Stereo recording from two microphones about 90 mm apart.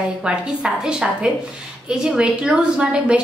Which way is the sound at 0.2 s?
10° right (ahead or behind).